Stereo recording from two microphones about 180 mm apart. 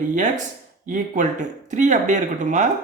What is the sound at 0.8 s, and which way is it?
Speech, 45° right (ahead or behind).